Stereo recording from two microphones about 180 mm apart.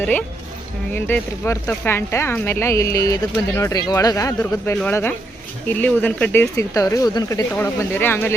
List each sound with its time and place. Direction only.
0.0 s speech: 10° left (ahead or behind)